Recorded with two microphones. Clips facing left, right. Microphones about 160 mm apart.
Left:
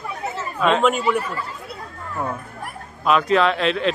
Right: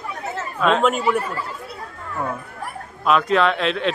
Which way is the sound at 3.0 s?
Centre (ahead or behind).